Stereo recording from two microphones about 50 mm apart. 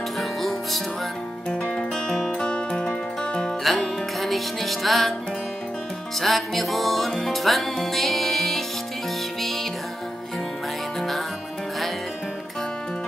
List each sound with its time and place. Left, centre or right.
0.2 s music: centre
3.6 s music: centre
6.1 s music: centre
11.0 s music: centre